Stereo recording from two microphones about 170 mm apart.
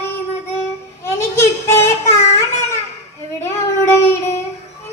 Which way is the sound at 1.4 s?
15° left (ahead or behind).